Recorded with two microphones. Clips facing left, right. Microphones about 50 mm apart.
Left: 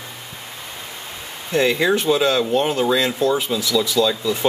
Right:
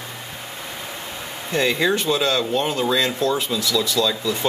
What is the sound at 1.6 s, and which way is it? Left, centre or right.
Speech, centre.